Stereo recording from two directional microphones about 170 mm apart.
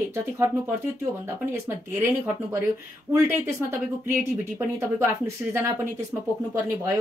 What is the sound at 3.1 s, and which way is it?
Speech, 15° right (ahead or behind).